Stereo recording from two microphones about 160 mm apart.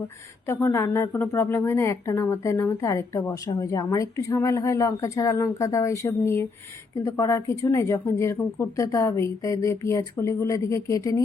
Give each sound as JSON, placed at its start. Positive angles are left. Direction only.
{"t": 0.4, "sound": "a woman's voice", "side_deg": 15}